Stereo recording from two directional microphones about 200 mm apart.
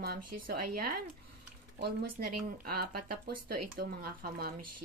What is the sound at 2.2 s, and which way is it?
Speech, 50° right (ahead or behind).